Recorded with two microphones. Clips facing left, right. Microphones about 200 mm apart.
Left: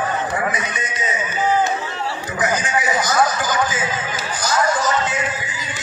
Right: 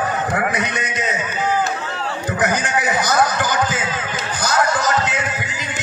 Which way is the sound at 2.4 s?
60° right (ahead or behind).